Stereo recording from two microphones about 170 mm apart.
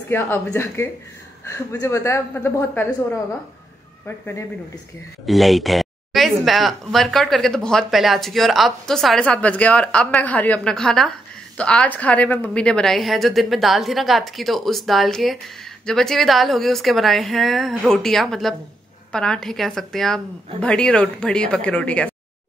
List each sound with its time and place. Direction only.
0.1 s a woman's voice: 15° left (ahead or behind)
5.2 s speech: centre (ahead or behind)